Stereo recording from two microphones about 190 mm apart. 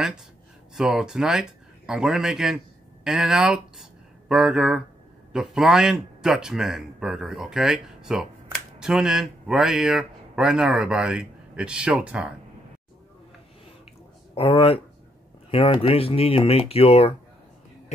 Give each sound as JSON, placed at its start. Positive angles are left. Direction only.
{"t": 0.7, "sound": "a man's voice", "side_deg": -5}
{"t": 14.3, "sound": "speech", "side_deg": 30}